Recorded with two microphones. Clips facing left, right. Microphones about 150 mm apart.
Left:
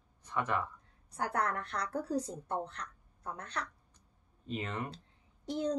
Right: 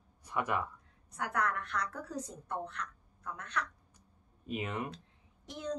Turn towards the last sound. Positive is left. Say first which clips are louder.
# left 5 dB
turn(degrees=30)  # may be behind; listen again after turning